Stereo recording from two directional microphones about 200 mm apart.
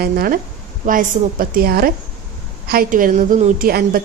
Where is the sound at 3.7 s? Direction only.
50° right (ahead or behind).